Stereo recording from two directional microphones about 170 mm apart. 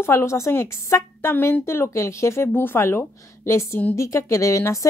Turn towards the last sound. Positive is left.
turn(degrees=15)  # may be behind; listen again after turning